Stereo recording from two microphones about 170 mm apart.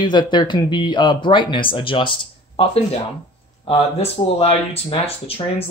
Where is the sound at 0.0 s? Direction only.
25° left (ahead or behind).